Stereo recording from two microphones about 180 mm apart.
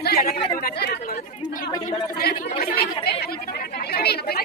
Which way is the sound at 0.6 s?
60° left (ahead or behind).